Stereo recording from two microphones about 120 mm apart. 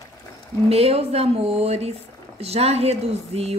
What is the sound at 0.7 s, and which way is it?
Speech, 55° right (ahead or behind).